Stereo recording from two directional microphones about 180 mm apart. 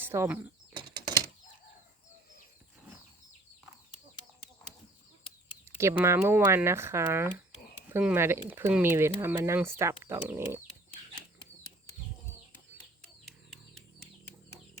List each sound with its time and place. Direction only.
0.0 s speech: 15° right (ahead or behind)
0.8 s a sound: 25° right (ahead or behind)
5.6 s speech: 15° right (ahead or behind)
13.2 s chicken: centre (ahead or behind)